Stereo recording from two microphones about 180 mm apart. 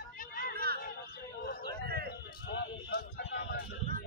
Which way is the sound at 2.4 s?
65° left (ahead or behind).